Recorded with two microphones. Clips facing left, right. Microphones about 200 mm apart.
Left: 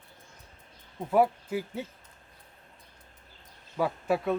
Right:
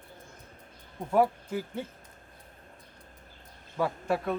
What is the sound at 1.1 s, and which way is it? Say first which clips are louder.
Speech: left 1 dB; 5° left (ahead or behind).